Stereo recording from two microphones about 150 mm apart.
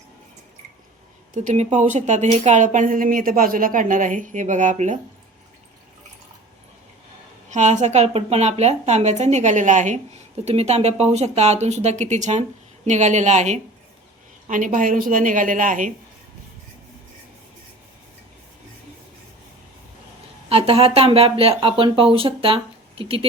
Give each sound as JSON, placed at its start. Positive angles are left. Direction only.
{"t": 1.4, "sound": "speech", "side_deg": -50}
{"t": 7.5, "sound": "speech", "side_deg": -50}
{"t": 10.4, "sound": "speech", "side_deg": -45}
{"t": 14.4, "sound": "speech", "side_deg": -60}
{"t": 20.5, "sound": "speech", "side_deg": -40}